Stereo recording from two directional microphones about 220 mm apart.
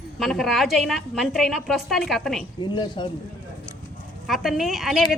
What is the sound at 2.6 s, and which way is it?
Speech, 20° left (ahead or behind).